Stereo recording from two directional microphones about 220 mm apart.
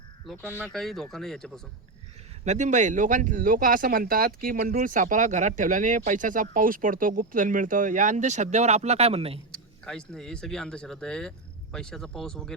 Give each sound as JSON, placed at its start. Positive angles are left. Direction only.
{"t": 0.5, "sound": "speech", "side_deg": 5}
{"t": 2.4, "sound": "speech", "side_deg": -30}
{"t": 9.5, "sound": "speech", "side_deg": 5}